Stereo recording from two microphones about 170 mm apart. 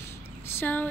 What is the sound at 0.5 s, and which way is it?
Speech, 10° left (ahead or behind).